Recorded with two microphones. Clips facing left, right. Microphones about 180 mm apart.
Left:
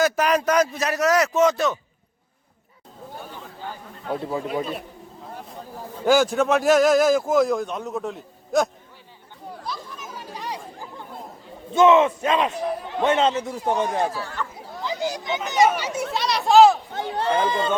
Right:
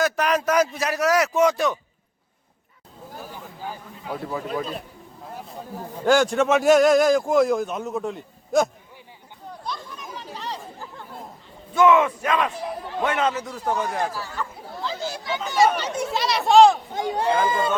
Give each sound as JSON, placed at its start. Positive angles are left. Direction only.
{"t": 0.0, "sound": "a man's voice", "side_deg": 0}
{"t": 3.2, "sound": "a sound", "side_deg": -5}
{"t": 4.2, "sound": "battle cry", "side_deg": 25}
{"t": 6.1, "sound": "a man's voice", "side_deg": 0}
{"t": 9.6, "sound": "chatter", "side_deg": 0}
{"t": 11.7, "sound": "battle cry", "side_deg": 25}
{"t": 13.5, "sound": "speech", "side_deg": 10}
{"t": 13.7, "sound": "battle cry", "side_deg": 25}
{"t": 14.1, "sound": "a man's voice", "side_deg": 0}
{"t": 14.8, "sound": "children playing", "side_deg": 15}
{"t": 15.4, "sound": "a man's voice", "side_deg": 15}
{"t": 16.9, "sound": "a man's voice", "side_deg": -10}